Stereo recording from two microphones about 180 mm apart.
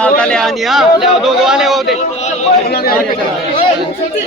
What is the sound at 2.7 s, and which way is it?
Speech, 60° left (ahead or behind).